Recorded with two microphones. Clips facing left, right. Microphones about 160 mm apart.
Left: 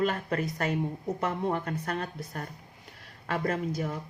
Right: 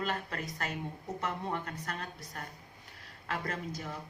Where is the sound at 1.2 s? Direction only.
55° left (ahead or behind).